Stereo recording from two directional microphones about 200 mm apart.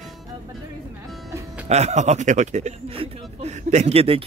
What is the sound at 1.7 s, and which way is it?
Speech, 35° right (ahead or behind).